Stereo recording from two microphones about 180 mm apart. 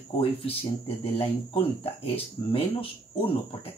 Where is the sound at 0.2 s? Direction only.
30° left (ahead or behind).